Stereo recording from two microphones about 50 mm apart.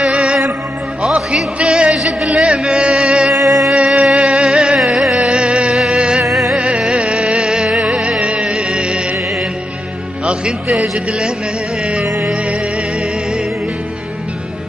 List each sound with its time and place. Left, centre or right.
0.1 s music: centre
2.0 s a sound: centre
2.7 s music: centre
5.9 s music: centre
10.2 s a man's voice: centre